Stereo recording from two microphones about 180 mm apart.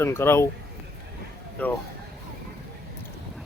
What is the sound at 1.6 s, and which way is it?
Speech, 10° left (ahead or behind).